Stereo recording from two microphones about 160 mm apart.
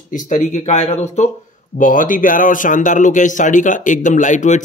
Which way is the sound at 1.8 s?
55° left (ahead or behind).